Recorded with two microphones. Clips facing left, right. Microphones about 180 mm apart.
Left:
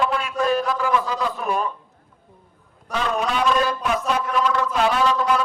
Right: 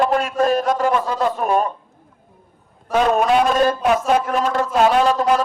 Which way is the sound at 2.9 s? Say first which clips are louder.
Right 8 dB; 50° right (ahead or behind).